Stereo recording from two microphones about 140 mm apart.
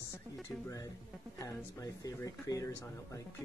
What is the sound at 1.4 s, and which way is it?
Speech, 25° left (ahead or behind).